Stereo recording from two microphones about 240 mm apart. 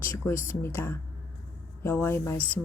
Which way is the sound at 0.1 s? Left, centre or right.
Centre.